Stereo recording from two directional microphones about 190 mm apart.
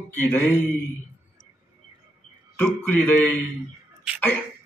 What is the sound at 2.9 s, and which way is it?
Speech, 10° left (ahead or behind).